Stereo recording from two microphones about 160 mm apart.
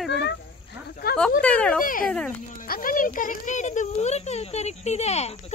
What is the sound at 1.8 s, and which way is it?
Speech, 60° left (ahead or behind).